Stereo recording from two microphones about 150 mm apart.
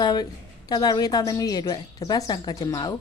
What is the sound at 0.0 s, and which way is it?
A woman's voice, 30° left (ahead or behind).